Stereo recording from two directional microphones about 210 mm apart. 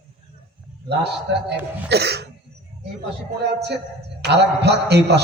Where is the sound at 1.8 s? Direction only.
50° right (ahead or behind).